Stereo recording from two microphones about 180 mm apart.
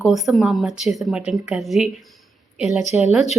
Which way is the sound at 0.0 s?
Centre (ahead or behind).